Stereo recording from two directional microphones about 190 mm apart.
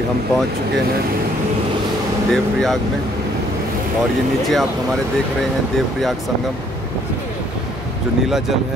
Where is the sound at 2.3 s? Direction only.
Centre (ahead or behind).